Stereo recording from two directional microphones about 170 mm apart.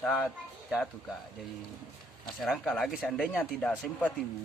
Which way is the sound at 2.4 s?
Centre (ahead or behind).